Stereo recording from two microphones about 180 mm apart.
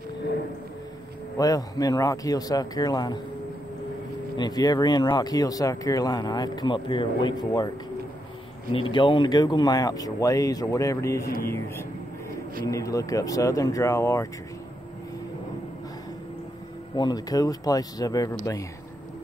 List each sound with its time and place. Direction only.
1.4 s speech: 20° left (ahead or behind)
4.4 s speech: 20° left (ahead or behind)
8.7 s speech: 25° left (ahead or behind)
11.2 s speech: 55° left (ahead or behind)
11.5 s speech: 15° left (ahead or behind)
16.9 s speech: 20° left (ahead or behind)